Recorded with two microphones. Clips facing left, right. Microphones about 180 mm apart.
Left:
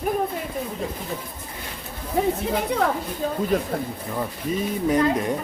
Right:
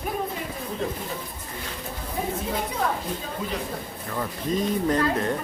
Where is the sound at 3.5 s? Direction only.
50° left (ahead or behind).